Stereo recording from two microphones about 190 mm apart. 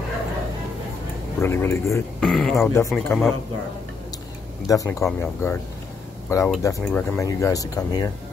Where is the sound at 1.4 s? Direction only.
10° left (ahead or behind).